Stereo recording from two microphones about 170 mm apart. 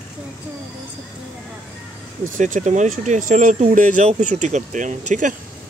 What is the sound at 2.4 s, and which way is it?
Speech, 45° right (ahead or behind).